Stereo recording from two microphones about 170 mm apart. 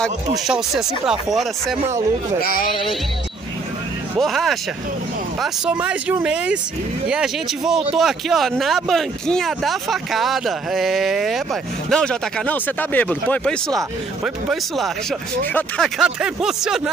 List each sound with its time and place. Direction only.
0.5 s speech: 5° right (ahead or behind)
2.4 s speech: 60° left (ahead or behind)
4.2 s speech: centre (ahead or behind)